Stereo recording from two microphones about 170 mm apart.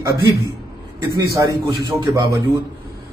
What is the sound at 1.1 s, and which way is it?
A man's voice, 20° right (ahead or behind).